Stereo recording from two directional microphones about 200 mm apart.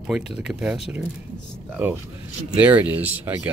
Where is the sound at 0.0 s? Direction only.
5° right (ahead or behind).